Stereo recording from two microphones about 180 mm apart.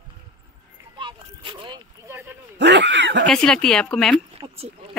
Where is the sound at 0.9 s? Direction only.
25° right (ahead or behind).